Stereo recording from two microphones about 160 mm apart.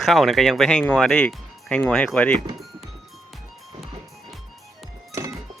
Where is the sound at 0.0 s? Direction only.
Centre (ahead or behind).